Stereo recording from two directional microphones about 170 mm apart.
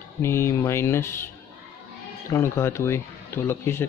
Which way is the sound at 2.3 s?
15° left (ahead or behind).